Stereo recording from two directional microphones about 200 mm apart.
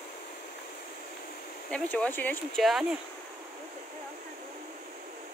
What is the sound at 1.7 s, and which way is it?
Speech, 5° left (ahead or behind).